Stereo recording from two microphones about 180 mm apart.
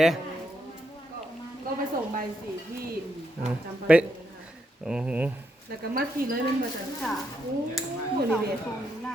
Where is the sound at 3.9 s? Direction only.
5° right (ahead or behind).